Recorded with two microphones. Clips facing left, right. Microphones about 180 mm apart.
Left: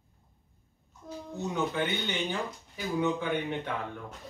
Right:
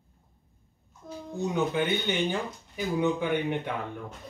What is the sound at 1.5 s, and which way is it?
Speech, 15° right (ahead or behind).